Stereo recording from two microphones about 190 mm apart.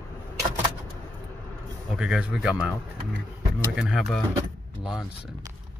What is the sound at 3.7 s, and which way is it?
A man's voice, 5° right (ahead or behind).